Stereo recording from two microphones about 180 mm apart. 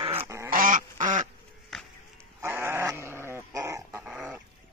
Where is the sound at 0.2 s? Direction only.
15° right (ahead or behind).